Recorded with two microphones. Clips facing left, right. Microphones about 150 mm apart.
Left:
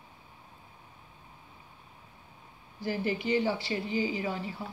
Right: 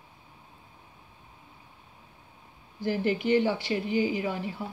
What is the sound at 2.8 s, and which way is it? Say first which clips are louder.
Speech: right 4 dB; 55° right (ahead or behind).